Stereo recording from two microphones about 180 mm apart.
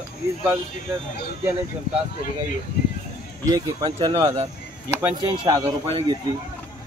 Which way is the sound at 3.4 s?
20° right (ahead or behind).